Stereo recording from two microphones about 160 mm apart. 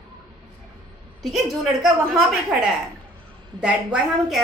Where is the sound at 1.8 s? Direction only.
Centre (ahead or behind).